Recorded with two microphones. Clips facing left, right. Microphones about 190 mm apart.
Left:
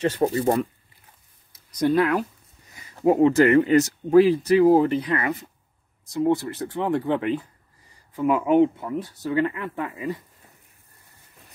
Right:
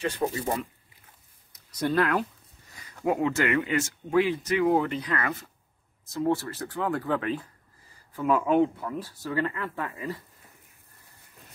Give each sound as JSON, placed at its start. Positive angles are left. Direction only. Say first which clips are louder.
{"t": 0.0, "sound": "speech", "louder": "left 7 dB", "side_deg": 40}
{"t": 2.7, "sound": "speech", "louder": "left 7 dB", "side_deg": 25}